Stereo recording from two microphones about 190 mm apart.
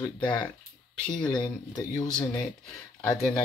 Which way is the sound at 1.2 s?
20° left (ahead or behind).